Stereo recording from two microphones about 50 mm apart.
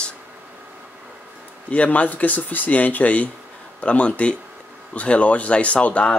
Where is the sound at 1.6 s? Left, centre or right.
Left.